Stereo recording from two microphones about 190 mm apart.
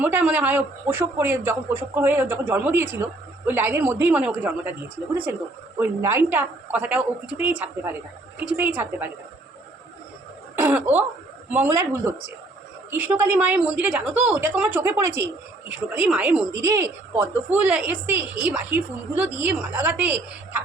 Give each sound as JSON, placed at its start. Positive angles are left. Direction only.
{"t": 0.0, "sound": "speech", "side_deg": -10}
{"t": 5.8, "sound": "speech", "side_deg": -15}
{"t": 10.6, "sound": "speech", "side_deg": -10}